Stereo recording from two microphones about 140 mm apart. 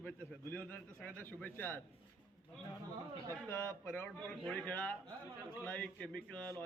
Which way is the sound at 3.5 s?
15° left (ahead or behind).